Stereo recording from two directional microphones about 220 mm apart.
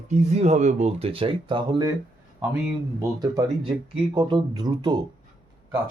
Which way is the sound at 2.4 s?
5° right (ahead or behind).